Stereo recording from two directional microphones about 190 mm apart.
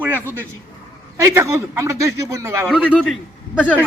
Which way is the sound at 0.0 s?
10° right (ahead or behind).